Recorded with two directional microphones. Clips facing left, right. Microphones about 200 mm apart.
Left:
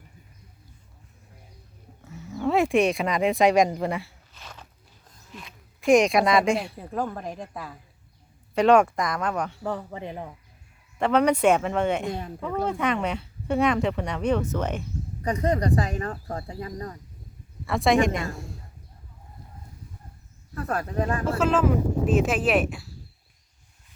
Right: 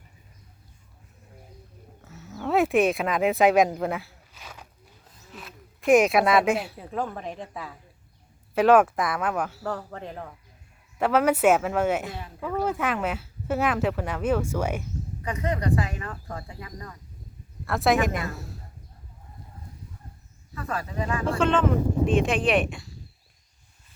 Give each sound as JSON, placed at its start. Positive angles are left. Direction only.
{"t": 2.0, "sound": "a sound", "side_deg": 0}
{"t": 5.3, "sound": "speech", "side_deg": -5}
{"t": 10.9, "sound": "speech", "side_deg": -5}
{"t": 15.2, "sound": "speech", "side_deg": 40}
{"t": 17.7, "sound": "speech", "side_deg": 0}
{"t": 20.7, "sound": "speech", "side_deg": 50}
{"t": 21.2, "sound": "speech", "side_deg": 5}